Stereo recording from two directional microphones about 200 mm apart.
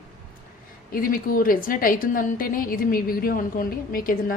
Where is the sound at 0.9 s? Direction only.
45° left (ahead or behind).